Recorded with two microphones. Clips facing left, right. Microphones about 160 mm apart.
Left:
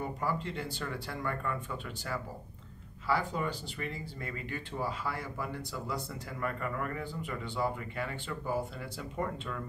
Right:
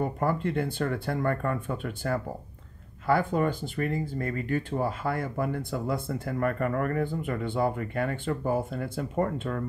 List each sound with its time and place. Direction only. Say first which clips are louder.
0.0 s speech: right 7 dB; 50° right (ahead or behind)